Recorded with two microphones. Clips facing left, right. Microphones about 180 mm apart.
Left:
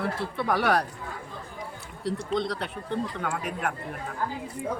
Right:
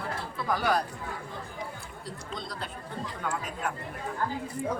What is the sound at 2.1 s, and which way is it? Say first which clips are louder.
Speech: left 12 dB; 70° left (ahead or behind).